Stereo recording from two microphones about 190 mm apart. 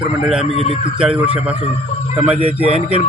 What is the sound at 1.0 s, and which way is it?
Speech, 5° right (ahead or behind).